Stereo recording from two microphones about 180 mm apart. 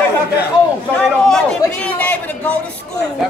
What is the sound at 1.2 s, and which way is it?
A man's voice, 5° left (ahead or behind).